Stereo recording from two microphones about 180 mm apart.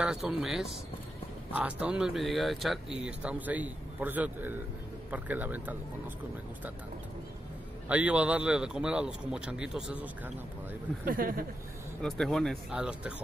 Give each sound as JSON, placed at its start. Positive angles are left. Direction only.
{"t": 0.0, "sound": "a man's voice", "side_deg": -5}
{"t": 7.9, "sound": "a man's voice", "side_deg": -10}
{"t": 11.1, "sound": "speech", "side_deg": -55}
{"t": 12.0, "sound": "a man's voice", "side_deg": 0}